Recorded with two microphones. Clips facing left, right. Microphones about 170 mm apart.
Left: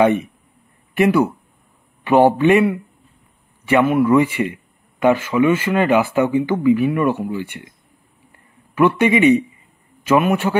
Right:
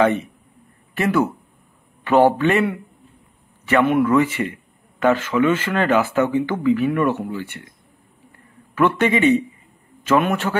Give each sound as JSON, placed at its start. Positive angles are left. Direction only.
{"t": 0.0, "sound": "speech", "side_deg": 15}
{"t": 3.8, "sound": "speech", "side_deg": 5}
{"t": 8.7, "sound": "speech", "side_deg": 10}